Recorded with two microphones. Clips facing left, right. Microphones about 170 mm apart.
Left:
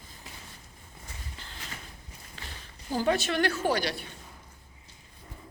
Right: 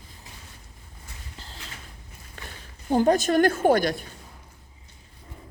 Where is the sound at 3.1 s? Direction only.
45° right (ahead or behind).